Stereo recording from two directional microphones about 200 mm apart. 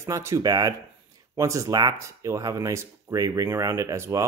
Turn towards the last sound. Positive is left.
turn(degrees=-15)  # may be behind; listen again after turning